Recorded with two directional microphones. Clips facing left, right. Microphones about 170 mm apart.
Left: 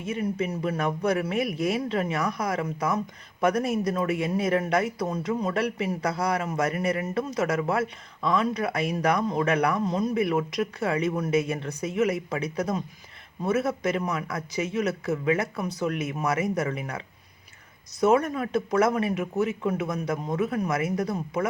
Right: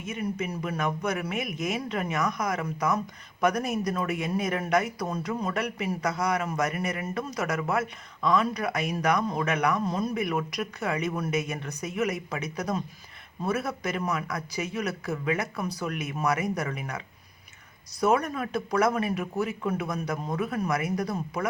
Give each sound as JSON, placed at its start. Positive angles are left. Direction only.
{"t": 0.0, "sound": "speech", "side_deg": 30}
{"t": 18.0, "sound": "speech", "side_deg": 25}